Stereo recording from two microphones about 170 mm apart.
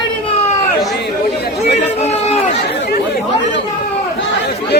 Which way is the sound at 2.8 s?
70° left (ahead or behind).